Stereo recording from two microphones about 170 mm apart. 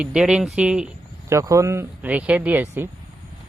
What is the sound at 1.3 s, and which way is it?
Speech, 20° right (ahead or behind).